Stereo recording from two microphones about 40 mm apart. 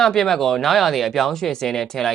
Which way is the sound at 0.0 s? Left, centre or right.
Centre.